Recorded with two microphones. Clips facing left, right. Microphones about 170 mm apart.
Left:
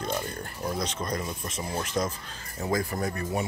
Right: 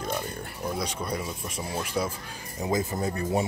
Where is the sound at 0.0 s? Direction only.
5° right (ahead or behind).